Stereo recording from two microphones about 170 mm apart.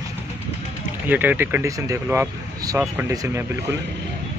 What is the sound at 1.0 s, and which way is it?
Speech, 10° right (ahead or behind).